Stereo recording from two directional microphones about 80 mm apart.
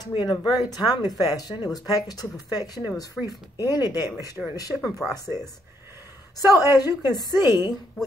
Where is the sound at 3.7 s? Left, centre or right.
Left.